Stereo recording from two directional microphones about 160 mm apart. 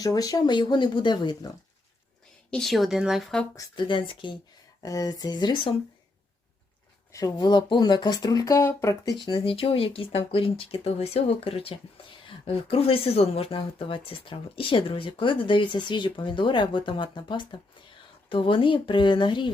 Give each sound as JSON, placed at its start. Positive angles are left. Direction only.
{"t": 0.0, "sound": "speech", "side_deg": 20}
{"t": 2.5, "sound": "speech", "side_deg": 0}
{"t": 3.5, "sound": "speech", "side_deg": 30}
{"t": 7.1, "sound": "speech", "side_deg": 25}